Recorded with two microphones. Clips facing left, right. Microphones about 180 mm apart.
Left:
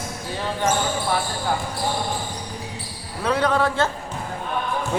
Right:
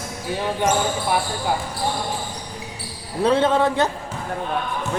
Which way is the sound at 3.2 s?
25° right (ahead or behind).